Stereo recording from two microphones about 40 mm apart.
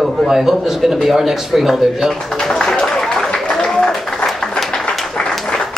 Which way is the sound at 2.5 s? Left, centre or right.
Centre.